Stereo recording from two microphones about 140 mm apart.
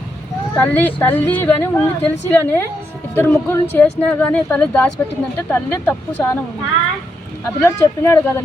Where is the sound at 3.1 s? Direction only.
15° left (ahead or behind).